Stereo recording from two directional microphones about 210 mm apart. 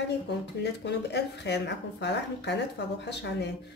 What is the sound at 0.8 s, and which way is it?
Speech, 55° left (ahead or behind).